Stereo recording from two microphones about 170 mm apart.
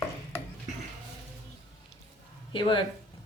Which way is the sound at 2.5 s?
30° left (ahead or behind).